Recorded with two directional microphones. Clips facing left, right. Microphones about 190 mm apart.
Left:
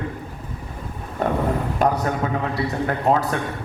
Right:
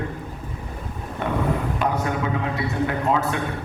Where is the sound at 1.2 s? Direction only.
40° left (ahead or behind).